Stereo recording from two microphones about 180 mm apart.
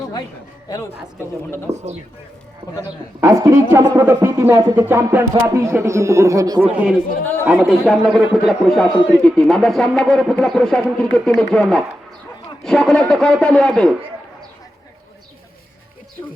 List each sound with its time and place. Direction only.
0.7 s a man's voice: 15° left (ahead or behind)
1.7 s speech: 40° right (ahead or behind)
3.2 s speech: 20° right (ahead or behind)
6.7 s speech: 5° right (ahead or behind)